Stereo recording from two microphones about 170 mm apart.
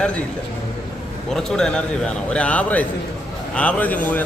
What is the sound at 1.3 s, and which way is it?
A man's voice, 5° left (ahead or behind).